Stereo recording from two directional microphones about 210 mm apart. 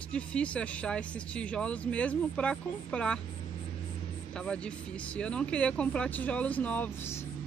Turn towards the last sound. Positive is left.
turn(degrees=10)  # may be behind; listen again after turning